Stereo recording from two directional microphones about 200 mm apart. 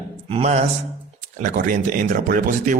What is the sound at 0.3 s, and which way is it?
Speech, 30° right (ahead or behind).